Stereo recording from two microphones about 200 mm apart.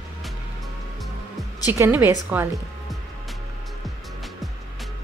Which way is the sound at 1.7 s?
10° right (ahead or behind).